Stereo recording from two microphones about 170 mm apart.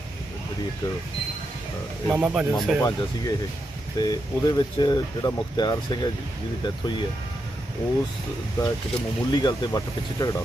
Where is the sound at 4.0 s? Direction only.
20° left (ahead or behind).